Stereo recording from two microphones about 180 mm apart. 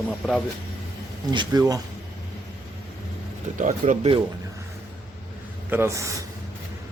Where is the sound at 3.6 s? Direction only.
45° right (ahead or behind).